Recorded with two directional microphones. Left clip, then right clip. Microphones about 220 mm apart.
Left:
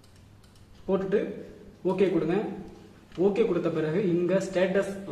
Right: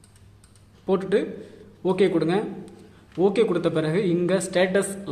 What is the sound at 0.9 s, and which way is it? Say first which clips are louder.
A man's voice: right 4 dB; 50° right (ahead or behind).